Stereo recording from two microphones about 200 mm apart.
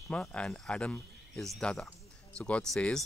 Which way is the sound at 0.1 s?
5° left (ahead or behind).